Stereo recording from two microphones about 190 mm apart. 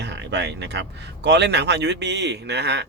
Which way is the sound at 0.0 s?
65° right (ahead or behind).